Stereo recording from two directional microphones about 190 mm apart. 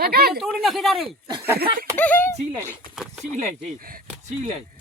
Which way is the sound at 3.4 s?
50° right (ahead or behind).